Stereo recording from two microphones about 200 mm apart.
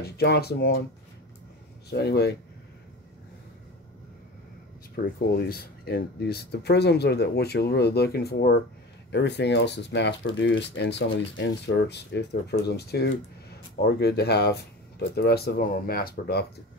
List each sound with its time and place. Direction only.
0.0 s speech: 55° left (ahead or behind)
1.9 s speech: 55° left (ahead or behind)
4.9 s speech: 50° left (ahead or behind)